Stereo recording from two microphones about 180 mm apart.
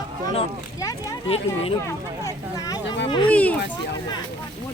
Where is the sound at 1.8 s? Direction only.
20° left (ahead or behind).